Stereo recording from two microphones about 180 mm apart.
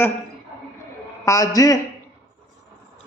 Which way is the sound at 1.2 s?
20° left (ahead or behind).